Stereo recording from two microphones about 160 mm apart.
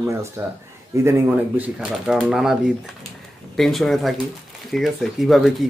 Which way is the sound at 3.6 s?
Centre (ahead or behind).